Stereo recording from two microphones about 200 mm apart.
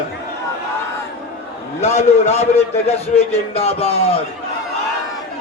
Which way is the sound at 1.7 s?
35° left (ahead or behind).